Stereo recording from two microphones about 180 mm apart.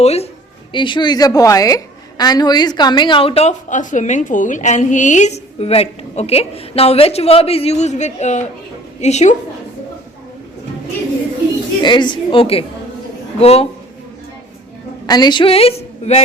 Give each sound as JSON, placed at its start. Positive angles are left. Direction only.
{"t": 0.0, "sound": "a woman's voice", "side_deg": 35}
{"t": 11.8, "sound": "a woman's voice", "side_deg": 25}
{"t": 15.0, "sound": "a woman's voice", "side_deg": 25}